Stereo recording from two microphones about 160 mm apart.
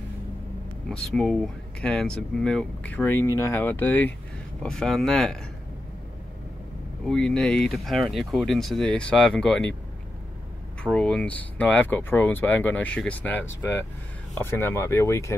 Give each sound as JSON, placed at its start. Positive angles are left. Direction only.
{"t": 0.8, "sound": "speech", "side_deg": 5}
{"t": 7.1, "sound": "speech", "side_deg": 5}
{"t": 10.8, "sound": "speech", "side_deg": 5}